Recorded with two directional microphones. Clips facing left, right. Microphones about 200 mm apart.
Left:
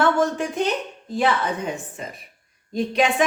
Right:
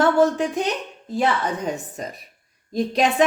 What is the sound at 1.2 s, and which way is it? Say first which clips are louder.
A woman's voice: even; 40° right (ahead or behind).